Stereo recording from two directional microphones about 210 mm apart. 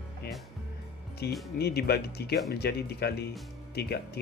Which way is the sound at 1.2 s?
50° left (ahead or behind).